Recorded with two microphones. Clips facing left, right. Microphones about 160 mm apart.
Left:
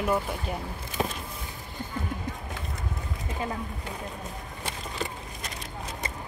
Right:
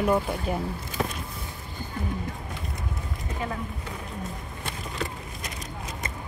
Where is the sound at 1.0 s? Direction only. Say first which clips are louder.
Even; 20° left (ahead or behind).